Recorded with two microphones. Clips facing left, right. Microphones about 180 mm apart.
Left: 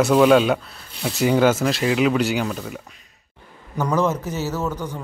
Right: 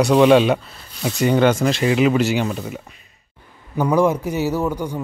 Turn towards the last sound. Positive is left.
turn(degrees=-15)  # may be behind; listen again after turning